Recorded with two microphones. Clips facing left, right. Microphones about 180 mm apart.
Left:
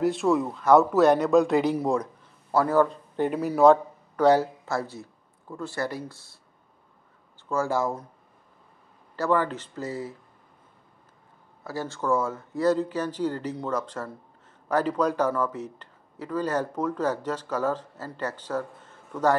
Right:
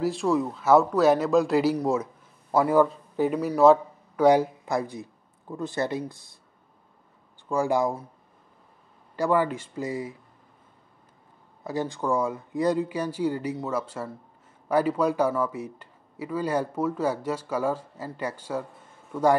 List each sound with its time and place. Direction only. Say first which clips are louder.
0.0 s a man's voice: left 1 dB; centre (ahead or behind)
4.3 s speech: right 1 dB; 15° right (ahead or behind)
7.4 s speech: right 2 dB; 15° right (ahead or behind)
9.1 s speech: right 1 dB; 10° right (ahead or behind)
11.6 s speech: right 2 dB; 20° right (ahead or behind)